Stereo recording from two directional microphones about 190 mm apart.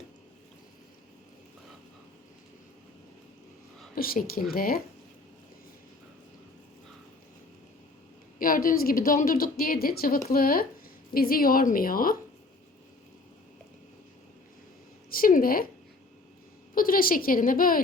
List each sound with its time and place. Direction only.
3.9 s a woman's voice: 50° left (ahead or behind)
8.4 s a woman's voice: 45° left (ahead or behind)
15.1 s a woman's voice: 50° left (ahead or behind)
16.7 s a woman's voice: 50° left (ahead or behind)